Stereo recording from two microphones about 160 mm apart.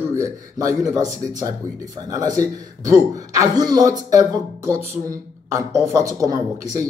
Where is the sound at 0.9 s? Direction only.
20° right (ahead or behind).